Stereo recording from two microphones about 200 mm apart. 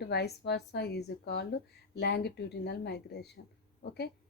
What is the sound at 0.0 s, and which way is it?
Speech, 55° left (ahead or behind).